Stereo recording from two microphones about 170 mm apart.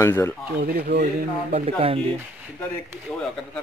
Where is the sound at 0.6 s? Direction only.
65° right (ahead or behind).